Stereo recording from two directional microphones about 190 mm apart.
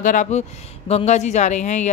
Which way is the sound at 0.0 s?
40° left (ahead or behind).